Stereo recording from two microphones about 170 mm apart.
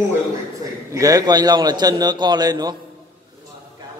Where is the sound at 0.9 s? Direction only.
20° right (ahead or behind).